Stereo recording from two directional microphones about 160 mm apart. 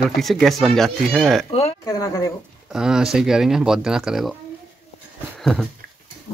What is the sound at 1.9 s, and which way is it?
Speech, 20° left (ahead or behind).